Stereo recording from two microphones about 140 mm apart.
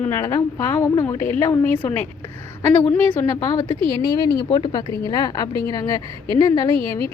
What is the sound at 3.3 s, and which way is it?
Speech, 25° left (ahead or behind).